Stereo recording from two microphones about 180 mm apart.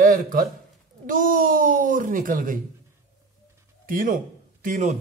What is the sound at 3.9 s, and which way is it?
Speech, 50° right (ahead or behind).